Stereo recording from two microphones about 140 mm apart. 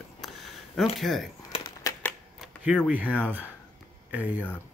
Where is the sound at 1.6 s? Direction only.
25° left (ahead or behind).